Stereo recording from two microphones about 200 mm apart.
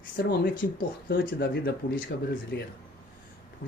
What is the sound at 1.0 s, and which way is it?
Speech, 50° left (ahead or behind).